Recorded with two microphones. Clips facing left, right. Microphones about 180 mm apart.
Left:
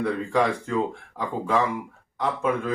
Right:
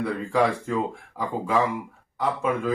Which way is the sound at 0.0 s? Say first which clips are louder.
Even; 5° right (ahead or behind).